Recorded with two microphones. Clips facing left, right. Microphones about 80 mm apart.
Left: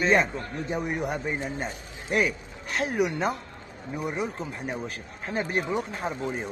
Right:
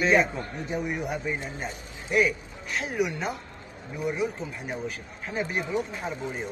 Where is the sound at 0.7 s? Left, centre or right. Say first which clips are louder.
Even; left.